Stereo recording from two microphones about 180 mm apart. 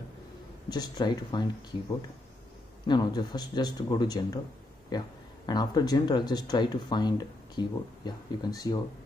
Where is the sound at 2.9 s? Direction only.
20° left (ahead or behind).